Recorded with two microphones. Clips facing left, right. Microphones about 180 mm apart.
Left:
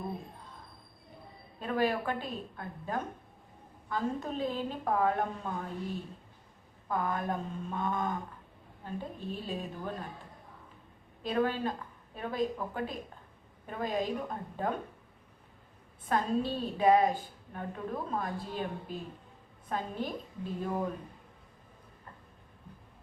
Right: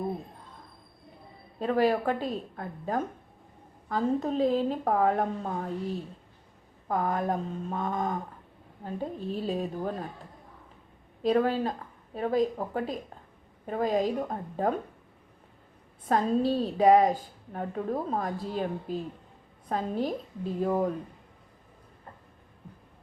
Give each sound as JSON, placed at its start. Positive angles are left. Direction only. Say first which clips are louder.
{"t": 1.5, "sound": "a woman's voice", "louder": "right 6 dB", "side_deg": -35}
{"t": 6.8, "sound": "a woman's voice", "louder": "right 4 dB", "side_deg": -40}
{"t": 11.2, "sound": "a woman's voice", "louder": "right 6 dB", "side_deg": -35}
{"t": 16.0, "sound": "a woman's voice", "louder": "right 5 dB", "side_deg": -35}